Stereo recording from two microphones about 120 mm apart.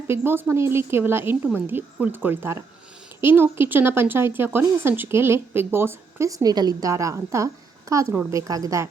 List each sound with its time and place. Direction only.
0.2 s speech: 20° right (ahead or behind)